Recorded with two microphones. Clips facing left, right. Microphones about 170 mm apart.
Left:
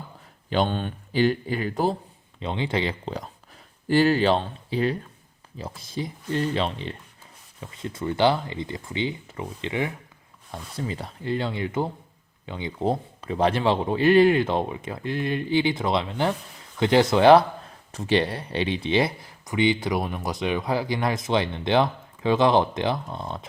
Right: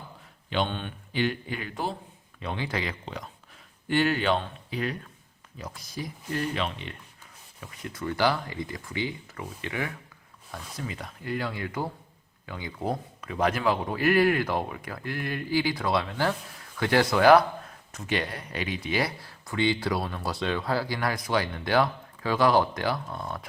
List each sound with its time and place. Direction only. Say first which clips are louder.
0.5 s speech: left 5 dB; 40° left (ahead or behind)
2.4 s speech: left 5 dB; 20° left (ahead or behind)